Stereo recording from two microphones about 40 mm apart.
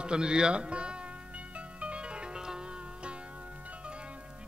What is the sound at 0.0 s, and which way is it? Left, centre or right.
Speech, right.